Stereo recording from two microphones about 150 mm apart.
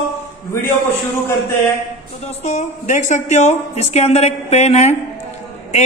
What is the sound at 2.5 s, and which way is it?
A man's voice, 50° left (ahead or behind).